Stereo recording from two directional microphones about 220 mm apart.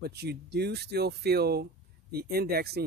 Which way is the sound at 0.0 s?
45° right (ahead or behind).